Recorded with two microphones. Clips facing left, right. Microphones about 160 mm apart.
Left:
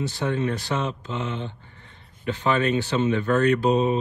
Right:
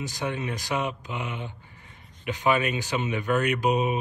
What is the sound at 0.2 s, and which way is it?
Speech, 15° right (ahead or behind).